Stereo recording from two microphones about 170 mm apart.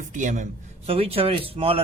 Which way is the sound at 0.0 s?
45° right (ahead or behind).